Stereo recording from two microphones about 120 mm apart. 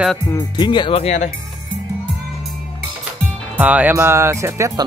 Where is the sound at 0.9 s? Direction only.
65° left (ahead or behind).